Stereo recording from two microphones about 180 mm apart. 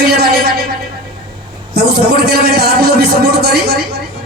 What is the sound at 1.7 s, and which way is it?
Speech, 60° right (ahead or behind).